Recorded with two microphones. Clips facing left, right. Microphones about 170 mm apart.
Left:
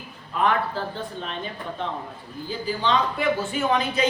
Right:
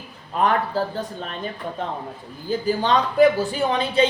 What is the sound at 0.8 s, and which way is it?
Speech, 40° right (ahead or behind).